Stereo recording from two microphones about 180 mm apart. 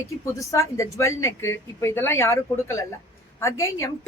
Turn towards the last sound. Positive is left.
turn(degrees=15)  # may be behind; listen again after turning